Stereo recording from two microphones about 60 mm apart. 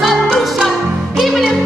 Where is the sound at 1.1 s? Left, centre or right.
Centre.